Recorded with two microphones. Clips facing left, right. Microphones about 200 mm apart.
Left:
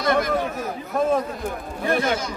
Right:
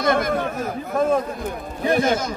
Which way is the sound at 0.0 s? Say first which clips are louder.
Right 1 dB; 50° right (ahead or behind).